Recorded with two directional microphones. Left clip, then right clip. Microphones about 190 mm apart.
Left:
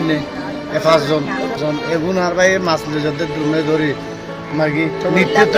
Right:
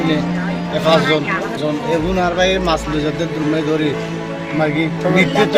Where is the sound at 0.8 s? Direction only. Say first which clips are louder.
Even; 5° left (ahead or behind).